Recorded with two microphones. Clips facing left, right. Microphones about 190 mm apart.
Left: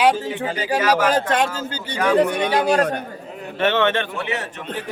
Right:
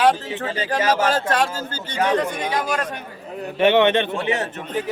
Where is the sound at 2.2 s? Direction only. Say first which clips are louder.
Left 5 dB; 70° left (ahead or behind).